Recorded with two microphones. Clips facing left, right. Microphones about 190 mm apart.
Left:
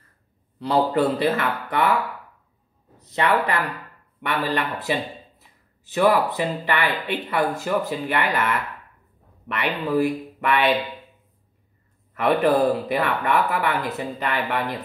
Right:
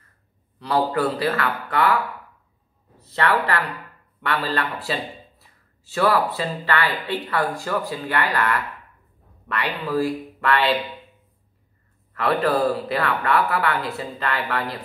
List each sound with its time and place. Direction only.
0.6 s speech: 25° left (ahead or behind)
3.0 s a man's voice: 15° left (ahead or behind)
12.1 s speech: 20° left (ahead or behind)